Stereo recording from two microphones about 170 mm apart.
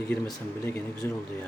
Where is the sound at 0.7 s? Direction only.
15° left (ahead or behind).